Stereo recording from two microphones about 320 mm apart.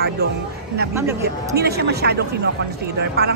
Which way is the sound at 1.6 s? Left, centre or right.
Right.